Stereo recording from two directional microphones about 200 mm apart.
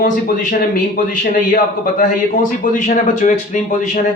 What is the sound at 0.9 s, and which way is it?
A man's voice, 45° left (ahead or behind).